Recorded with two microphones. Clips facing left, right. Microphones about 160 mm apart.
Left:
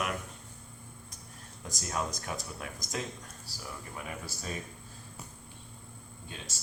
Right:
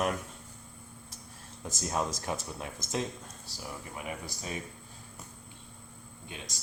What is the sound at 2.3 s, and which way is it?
Speech, 25° right (ahead or behind).